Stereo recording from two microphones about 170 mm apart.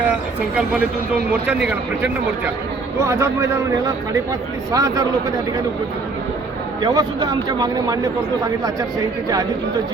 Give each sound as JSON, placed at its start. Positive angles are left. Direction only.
{"t": 0.5, "sound": "a man's voice", "side_deg": -5}
{"t": 6.8, "sound": "a man's voice", "side_deg": -25}